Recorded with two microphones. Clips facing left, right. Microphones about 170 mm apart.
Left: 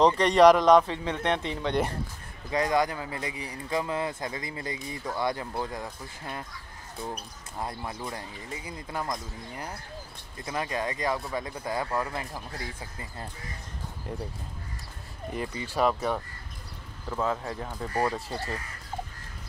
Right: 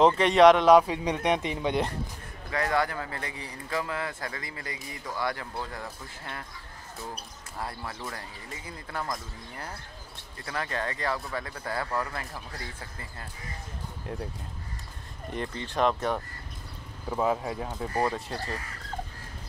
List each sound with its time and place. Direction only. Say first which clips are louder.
0.0 s speech: even; centre (ahead or behind)
2.5 s speech: left 2 dB; 15° left (ahead or behind)
7.5 s speech: left 2 dB; 20° left (ahead or behind)
10.4 s speech: left 2 dB; 20° left (ahead or behind)
15.3 s speech: even; 5° left (ahead or behind)
17.1 s speech: right 2 dB; 15° right (ahead or behind)